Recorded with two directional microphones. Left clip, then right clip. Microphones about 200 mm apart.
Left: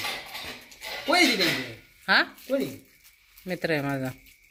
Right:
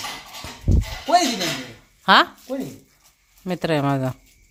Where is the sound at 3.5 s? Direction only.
35° right (ahead or behind).